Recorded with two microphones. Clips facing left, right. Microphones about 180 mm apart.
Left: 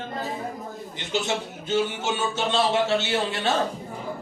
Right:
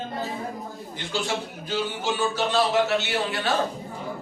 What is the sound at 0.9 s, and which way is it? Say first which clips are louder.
A man's voice: left 2 dB; 20° left (ahead or behind).